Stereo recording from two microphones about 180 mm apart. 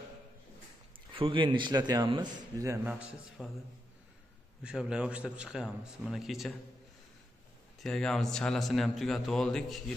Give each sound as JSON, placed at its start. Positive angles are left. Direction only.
{"t": 1.1, "sound": "a man's voice", "side_deg": -30}
{"t": 4.6, "sound": "a man's voice", "side_deg": -5}
{"t": 7.8, "sound": "a man's voice", "side_deg": 5}